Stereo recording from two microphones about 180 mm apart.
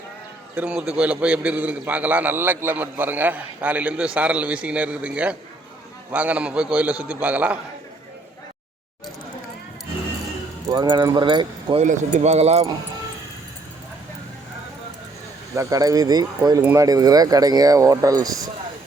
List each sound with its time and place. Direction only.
0.5 s a man's voice: 5° right (ahead or behind)
10.7 s speech: 25° right (ahead or behind)
11.8 s speech: 40° right (ahead or behind)
15.5 s speech: 20° right (ahead or behind)